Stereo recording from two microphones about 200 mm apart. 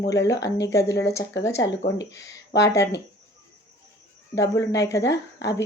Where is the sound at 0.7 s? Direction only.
15° left (ahead or behind).